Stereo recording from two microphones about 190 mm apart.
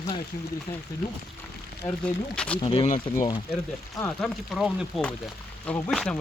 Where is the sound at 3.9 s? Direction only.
10° left (ahead or behind).